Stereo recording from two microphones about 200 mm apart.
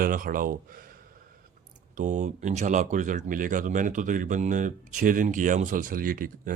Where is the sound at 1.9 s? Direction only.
40° right (ahead or behind).